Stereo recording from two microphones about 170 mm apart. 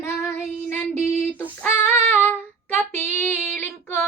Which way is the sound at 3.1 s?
15° left (ahead or behind).